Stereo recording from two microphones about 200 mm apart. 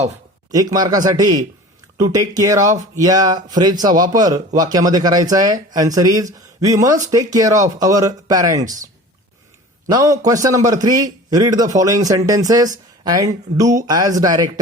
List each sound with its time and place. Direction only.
0.5 s speech: 20° right (ahead or behind)
9.8 s speech: 15° right (ahead or behind)